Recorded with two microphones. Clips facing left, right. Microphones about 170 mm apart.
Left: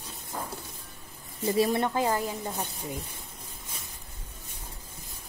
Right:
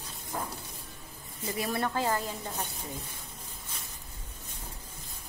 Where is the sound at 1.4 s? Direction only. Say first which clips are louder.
Left 7 dB; 25° left (ahead or behind).